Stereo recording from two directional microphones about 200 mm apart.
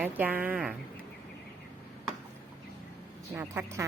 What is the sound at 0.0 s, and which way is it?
Speech, 10° right (ahead or behind).